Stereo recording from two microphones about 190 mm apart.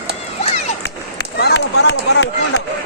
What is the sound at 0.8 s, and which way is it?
Run, 65° left (ahead or behind).